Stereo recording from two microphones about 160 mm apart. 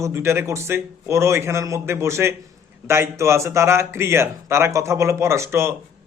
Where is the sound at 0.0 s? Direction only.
15° right (ahead or behind).